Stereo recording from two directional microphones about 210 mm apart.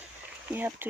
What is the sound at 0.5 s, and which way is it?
Speech, 10° right (ahead or behind).